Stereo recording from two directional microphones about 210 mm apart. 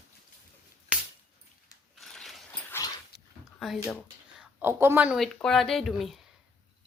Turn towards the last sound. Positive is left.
turn(degrees=0)  # may be behind; listen again after turning